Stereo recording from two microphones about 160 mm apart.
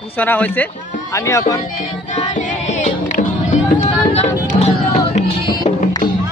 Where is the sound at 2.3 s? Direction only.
50° left (ahead or behind).